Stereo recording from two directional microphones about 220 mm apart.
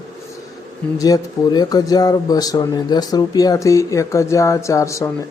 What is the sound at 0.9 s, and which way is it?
Speech, 15° left (ahead or behind).